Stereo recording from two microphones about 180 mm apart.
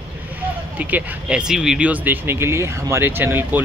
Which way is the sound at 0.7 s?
5° right (ahead or behind).